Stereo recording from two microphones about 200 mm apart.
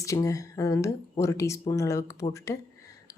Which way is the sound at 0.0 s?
15° left (ahead or behind).